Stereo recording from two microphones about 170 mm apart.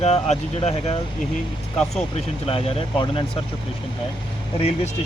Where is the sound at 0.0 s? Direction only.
40° left (ahead or behind).